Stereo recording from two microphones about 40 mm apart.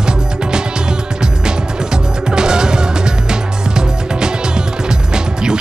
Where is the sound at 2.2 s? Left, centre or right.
Centre.